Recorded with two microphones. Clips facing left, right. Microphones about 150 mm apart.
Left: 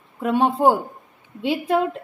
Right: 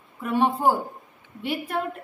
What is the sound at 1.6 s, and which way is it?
Speech, 70° left (ahead or behind).